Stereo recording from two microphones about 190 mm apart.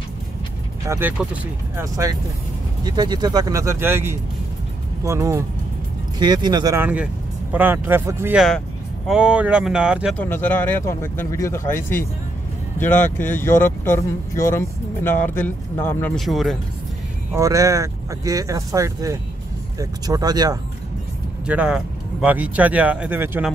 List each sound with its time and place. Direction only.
0.8 s speech: 10° right (ahead or behind)
8.4 s speech: centre (ahead or behind)
10.1 s speech: 10° left (ahead or behind)
12.7 s speech: 10° left (ahead or behind)
16.2 s speech: centre (ahead or behind)
17.3 s speech: 15° right (ahead or behind)
21.5 s speech: 5° right (ahead or behind)